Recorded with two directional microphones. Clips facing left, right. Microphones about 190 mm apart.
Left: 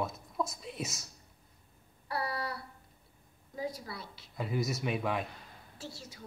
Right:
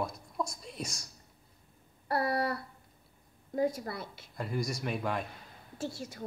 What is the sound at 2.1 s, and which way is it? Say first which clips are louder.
Speech: right 6 dB; 50° right (ahead or behind).